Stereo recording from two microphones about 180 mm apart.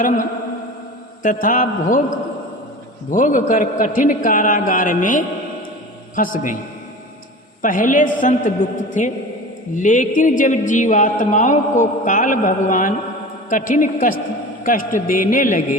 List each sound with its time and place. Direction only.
1.2 s a woman's voice: 45° left (ahead or behind)
3.1 s a woman's voice: 45° left (ahead or behind)
7.6 s a woman's voice: 45° left (ahead or behind)